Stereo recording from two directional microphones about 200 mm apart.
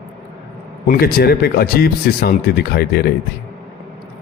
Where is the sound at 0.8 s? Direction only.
50° left (ahead or behind).